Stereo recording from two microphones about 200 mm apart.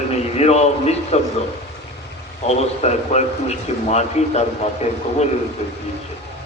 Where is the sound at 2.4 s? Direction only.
30° left (ahead or behind).